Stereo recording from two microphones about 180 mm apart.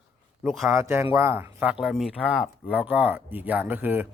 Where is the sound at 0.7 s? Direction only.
15° right (ahead or behind).